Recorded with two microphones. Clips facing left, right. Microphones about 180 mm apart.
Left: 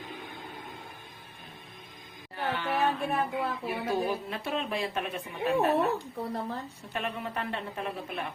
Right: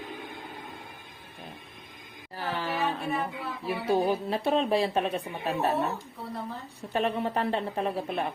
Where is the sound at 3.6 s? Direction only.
30° right (ahead or behind).